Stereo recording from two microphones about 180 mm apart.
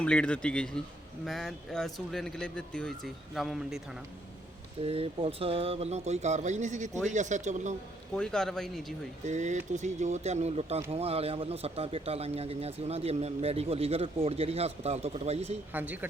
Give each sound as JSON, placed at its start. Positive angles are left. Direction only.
{"t": 0.0, "sound": "speech", "side_deg": 5}
{"t": 4.8, "sound": "speech", "side_deg": -30}
{"t": 8.1, "sound": "speech", "side_deg": 5}
{"t": 9.2, "sound": "speech", "side_deg": -40}
{"t": 15.7, "sound": "speech", "side_deg": -10}